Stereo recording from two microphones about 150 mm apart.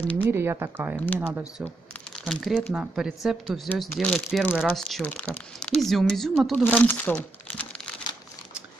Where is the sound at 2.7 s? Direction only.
5° right (ahead or behind); by 7.9 s 10° left (ahead or behind).